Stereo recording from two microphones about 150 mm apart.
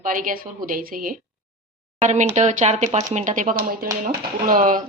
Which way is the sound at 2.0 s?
55° right (ahead or behind).